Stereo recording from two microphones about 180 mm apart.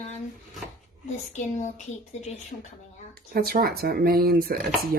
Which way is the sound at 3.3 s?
55° right (ahead or behind).